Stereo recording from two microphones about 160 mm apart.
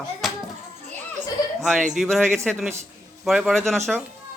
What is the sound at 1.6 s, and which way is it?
Speech, centre (ahead or behind).